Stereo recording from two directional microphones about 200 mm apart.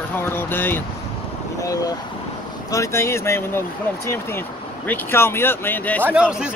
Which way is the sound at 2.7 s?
15° left (ahead or behind).